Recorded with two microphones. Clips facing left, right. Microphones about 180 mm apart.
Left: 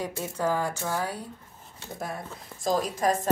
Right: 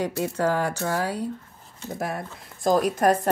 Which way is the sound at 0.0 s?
70° right (ahead or behind).